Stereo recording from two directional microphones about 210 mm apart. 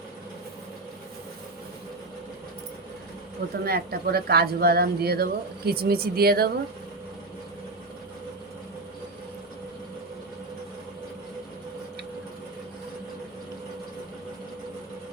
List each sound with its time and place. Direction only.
3.6 s a woman's voice: 45° right (ahead or behind)